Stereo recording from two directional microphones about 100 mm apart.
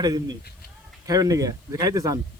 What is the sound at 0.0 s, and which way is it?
Speech, 45° right (ahead or behind).